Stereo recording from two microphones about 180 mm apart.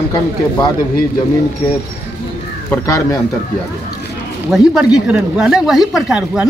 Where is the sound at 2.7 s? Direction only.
15° left (ahead or behind).